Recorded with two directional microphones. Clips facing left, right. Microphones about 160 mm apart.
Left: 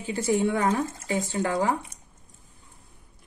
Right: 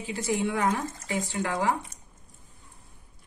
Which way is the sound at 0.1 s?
40° left (ahead or behind).